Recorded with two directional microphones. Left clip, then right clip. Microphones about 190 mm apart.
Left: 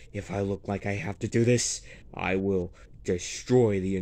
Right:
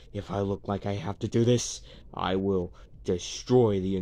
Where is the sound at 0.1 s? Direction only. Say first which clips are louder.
Even; 5° left (ahead or behind).